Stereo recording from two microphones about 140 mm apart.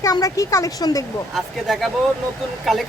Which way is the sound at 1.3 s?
Centre (ahead or behind).